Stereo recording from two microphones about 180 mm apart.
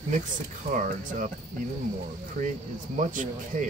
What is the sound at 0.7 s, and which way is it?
Speech, 50° right (ahead or behind).